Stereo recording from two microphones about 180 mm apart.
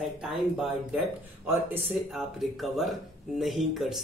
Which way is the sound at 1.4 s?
10° right (ahead or behind).